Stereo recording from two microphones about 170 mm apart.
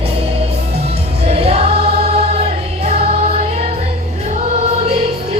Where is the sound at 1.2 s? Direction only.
35° right (ahead or behind).